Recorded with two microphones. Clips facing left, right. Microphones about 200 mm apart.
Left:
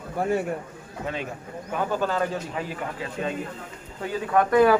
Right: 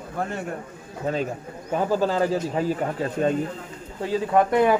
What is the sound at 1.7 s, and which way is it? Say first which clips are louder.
Speech: right 4 dB; 30° right (ahead or behind).